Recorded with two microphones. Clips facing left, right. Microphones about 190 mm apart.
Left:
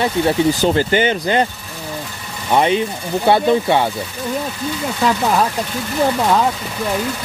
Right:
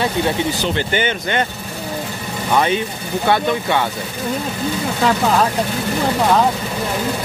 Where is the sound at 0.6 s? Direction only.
45° left (ahead or behind).